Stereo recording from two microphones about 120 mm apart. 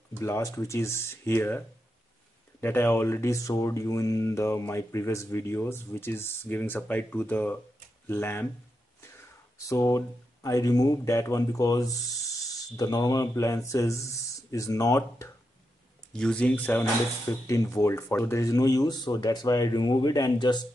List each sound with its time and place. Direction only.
0.2 s speech: 25° left (ahead or behind)
2.6 s speech: 20° left (ahead or behind)
9.7 s speech: 25° left (ahead or behind)
16.1 s speech: 5° left (ahead or behind)
17.3 s speech: 25° left (ahead or behind)